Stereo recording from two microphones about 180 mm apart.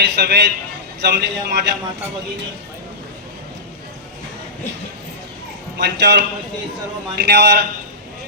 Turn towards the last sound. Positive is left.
turn(degrees=-70)  # may be behind; listen again after turning